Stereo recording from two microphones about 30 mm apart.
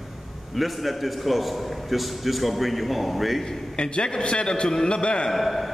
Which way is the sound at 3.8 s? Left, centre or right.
Left.